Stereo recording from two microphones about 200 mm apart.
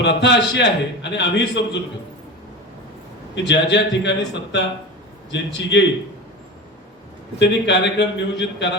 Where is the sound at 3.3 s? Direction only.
60° left (ahead or behind).